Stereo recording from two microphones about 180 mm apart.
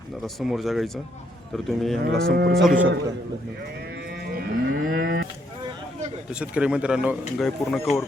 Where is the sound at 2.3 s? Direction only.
60° right (ahead or behind).